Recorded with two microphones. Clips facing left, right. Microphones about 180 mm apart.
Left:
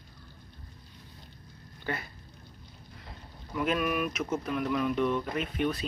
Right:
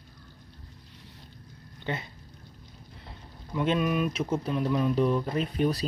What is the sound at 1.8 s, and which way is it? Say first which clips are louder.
Speech: right 2 dB; 20° right (ahead or behind).